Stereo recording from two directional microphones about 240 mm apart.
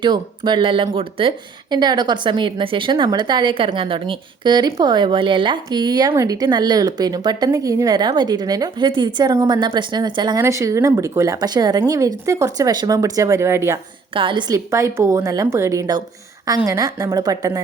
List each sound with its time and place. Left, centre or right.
0.0 s a woman's voice: centre